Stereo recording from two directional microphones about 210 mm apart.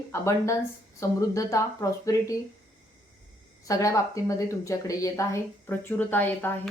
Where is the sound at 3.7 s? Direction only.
15° left (ahead or behind).